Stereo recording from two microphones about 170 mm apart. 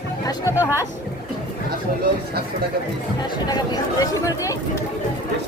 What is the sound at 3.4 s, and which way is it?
Speech, 25° left (ahead or behind).